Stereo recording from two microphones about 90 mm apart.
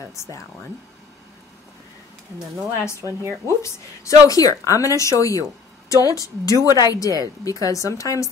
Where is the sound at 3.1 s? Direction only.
30° right (ahead or behind).